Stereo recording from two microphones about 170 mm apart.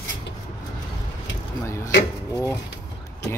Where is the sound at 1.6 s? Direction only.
15° left (ahead or behind).